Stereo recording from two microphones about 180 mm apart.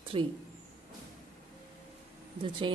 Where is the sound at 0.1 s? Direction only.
30° right (ahead or behind).